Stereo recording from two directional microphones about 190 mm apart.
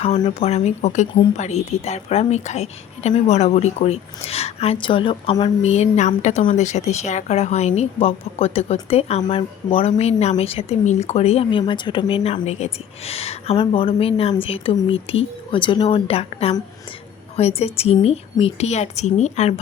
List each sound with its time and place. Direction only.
0.3 s a woman's voice: 35° left (ahead or behind)